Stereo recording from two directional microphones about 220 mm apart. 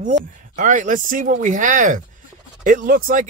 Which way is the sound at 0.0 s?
35° right (ahead or behind).